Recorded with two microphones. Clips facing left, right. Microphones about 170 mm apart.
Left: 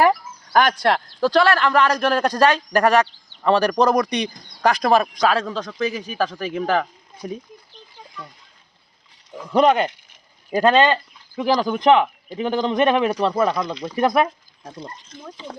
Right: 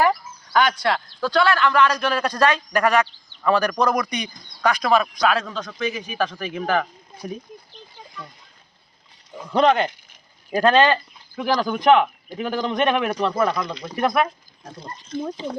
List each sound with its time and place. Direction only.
0.1 s speech: 50° left (ahead or behind); by 6.8 s 30° left (ahead or behind)
9.5 s speech: 10° left (ahead or behind)
10.5 s a man's voice: 20° left (ahead or behind)
13.9 s speech: 30° left (ahead or behind)